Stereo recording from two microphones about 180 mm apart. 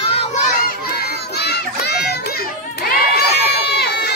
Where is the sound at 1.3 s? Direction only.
65° left (ahead or behind).